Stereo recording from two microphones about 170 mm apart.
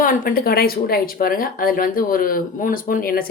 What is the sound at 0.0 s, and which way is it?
Speech, 55° left (ahead or behind).